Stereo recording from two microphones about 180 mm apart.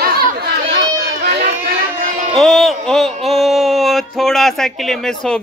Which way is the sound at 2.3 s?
Centre (ahead or behind).